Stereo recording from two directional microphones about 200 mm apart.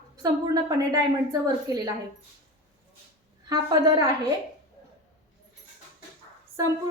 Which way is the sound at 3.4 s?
20° right (ahead or behind).